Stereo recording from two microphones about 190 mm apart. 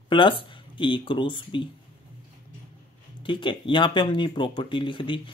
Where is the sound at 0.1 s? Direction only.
25° left (ahead or behind).